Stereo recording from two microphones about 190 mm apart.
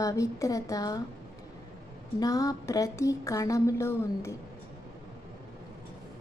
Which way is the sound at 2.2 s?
20° left (ahead or behind).